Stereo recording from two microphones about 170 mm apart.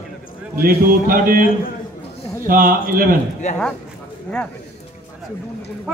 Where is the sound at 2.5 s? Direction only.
55° right (ahead or behind).